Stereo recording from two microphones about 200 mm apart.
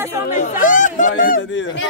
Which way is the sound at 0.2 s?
40° left (ahead or behind).